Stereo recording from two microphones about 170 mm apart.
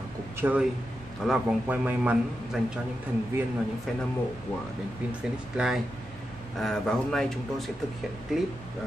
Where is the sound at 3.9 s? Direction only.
Centre (ahead or behind).